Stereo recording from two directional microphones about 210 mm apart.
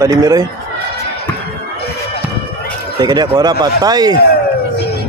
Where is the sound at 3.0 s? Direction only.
20° right (ahead or behind).